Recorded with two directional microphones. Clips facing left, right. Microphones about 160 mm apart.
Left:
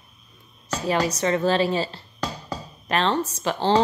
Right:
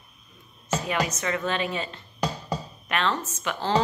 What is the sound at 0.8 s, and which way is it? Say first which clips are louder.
Speech: left 8 dB; 35° left (ahead or behind).